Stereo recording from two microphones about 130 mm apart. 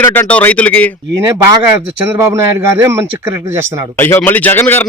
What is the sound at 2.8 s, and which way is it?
Speech, 20° right (ahead or behind).